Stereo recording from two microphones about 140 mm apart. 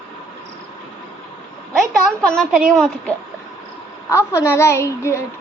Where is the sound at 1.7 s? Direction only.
5° left (ahead or behind).